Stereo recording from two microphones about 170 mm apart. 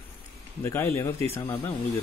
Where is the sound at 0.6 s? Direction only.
15° left (ahead or behind).